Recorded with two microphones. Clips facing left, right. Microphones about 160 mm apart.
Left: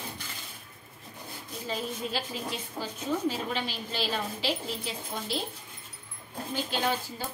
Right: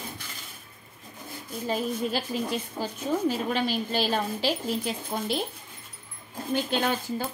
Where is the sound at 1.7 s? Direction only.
45° right (ahead or behind).